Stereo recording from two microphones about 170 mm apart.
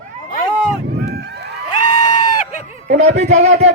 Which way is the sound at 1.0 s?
75° right (ahead or behind).